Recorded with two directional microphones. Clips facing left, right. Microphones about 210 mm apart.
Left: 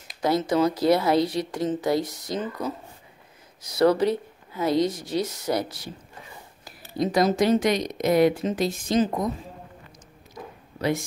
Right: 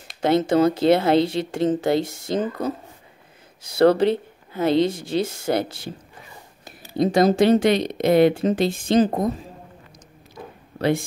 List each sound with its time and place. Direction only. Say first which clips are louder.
0.2 s speech: right 4 dB; 25° right (ahead or behind)
3.6 s speech: right 4 dB; 30° right (ahead or behind)
7.1 s speech: right 4 dB; 30° right (ahead or behind)
10.3 s a sound: right 1 dB; 30° right (ahead or behind)